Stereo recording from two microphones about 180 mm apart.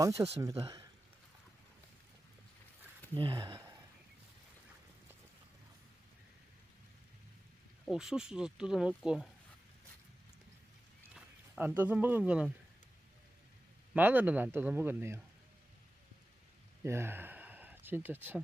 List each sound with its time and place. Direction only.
0.0 s speech: 15° right (ahead or behind)
3.2 s speech: 25° right (ahead or behind)
7.9 s speech: 5° right (ahead or behind)
11.1 s speech: 10° right (ahead or behind)
13.9 s speech: 10° right (ahead or behind)
16.8 s speech: 15° right (ahead or behind)